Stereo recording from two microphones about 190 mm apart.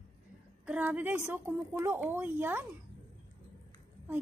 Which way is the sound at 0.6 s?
10° right (ahead or behind).